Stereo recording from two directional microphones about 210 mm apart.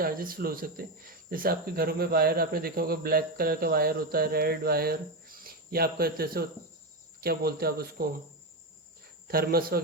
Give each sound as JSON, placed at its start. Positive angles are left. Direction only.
{"t": 0.0, "sound": "speech", "side_deg": -45}
{"t": 9.2, "sound": "speech", "side_deg": -45}